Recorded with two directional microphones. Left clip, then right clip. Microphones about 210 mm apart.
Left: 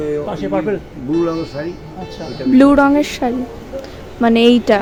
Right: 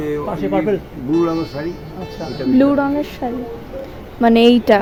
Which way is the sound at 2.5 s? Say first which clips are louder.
Left 5 dB; 20° left (ahead or behind).